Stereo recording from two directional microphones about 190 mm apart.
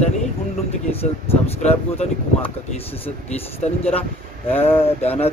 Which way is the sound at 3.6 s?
35° left (ahead or behind).